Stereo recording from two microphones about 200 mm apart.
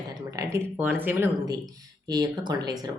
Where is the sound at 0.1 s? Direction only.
15° right (ahead or behind).